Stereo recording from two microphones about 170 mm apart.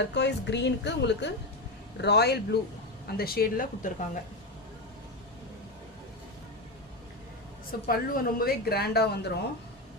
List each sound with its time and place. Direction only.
0.0 s a woman's voice: 90° left
2.0 s speech: 75° left (ahead or behind)
3.1 s speech: 65° left (ahead or behind)
7.9 s speech: 60° left (ahead or behind)